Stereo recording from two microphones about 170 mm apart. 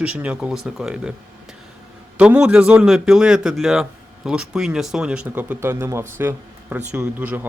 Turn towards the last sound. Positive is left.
turn(degrees=-10)  # may be behind; listen again after turning